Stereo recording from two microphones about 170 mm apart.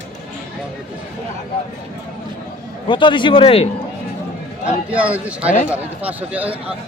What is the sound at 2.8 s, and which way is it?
Speech, 30° left (ahead or behind).